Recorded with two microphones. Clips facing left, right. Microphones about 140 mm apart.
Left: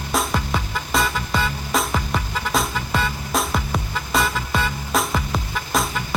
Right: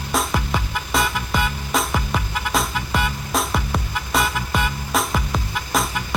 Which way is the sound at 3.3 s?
Centre (ahead or behind).